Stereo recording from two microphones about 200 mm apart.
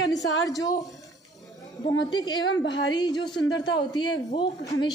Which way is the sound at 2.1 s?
20° left (ahead or behind).